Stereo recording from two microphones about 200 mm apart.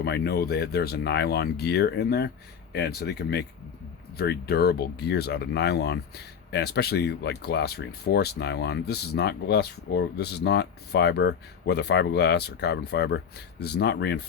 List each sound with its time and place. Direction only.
0.0 s speech: 55° left (ahead or behind)